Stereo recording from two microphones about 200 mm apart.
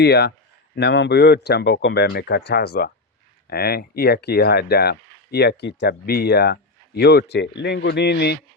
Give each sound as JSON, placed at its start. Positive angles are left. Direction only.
{"t": 0.0, "sound": "speech", "side_deg": 60}